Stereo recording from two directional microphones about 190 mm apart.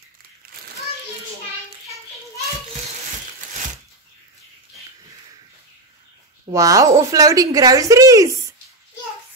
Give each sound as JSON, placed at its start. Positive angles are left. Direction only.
{"t": 6.5, "sound": "a woman's voice", "side_deg": -15}